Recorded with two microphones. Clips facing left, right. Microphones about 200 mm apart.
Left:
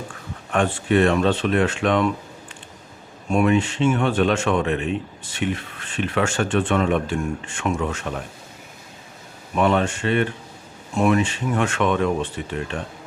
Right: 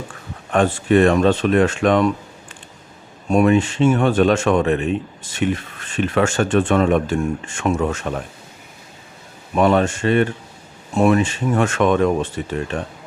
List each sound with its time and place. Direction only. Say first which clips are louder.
0.5 s speech: right 4 dB; 40° right (ahead or behind)
3.3 s speech: right 4 dB; 40° right (ahead or behind)
9.6 s speech: right 4 dB; 40° right (ahead or behind)